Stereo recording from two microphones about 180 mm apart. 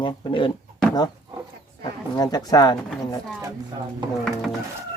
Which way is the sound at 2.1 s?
20° left (ahead or behind).